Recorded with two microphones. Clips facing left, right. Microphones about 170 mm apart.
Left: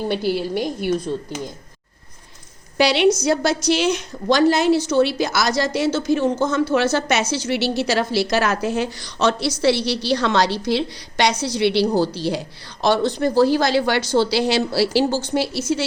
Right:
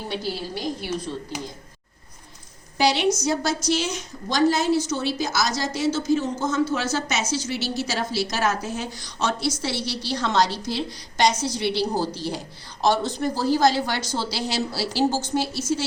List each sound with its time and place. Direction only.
0.1 s a woman's voice: 60° left (ahead or behind)
2.7 s a woman's voice: 70° left (ahead or behind)